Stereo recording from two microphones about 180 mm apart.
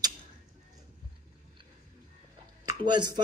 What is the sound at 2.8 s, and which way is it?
Speech, 25° right (ahead or behind).